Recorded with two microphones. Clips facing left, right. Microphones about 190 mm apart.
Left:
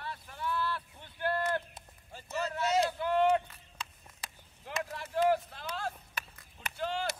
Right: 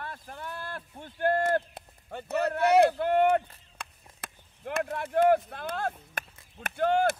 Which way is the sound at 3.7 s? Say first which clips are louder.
Right 1 dB; 55° right (ahead or behind).